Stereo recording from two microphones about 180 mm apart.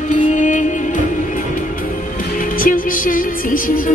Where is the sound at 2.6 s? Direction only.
50° left (ahead or behind).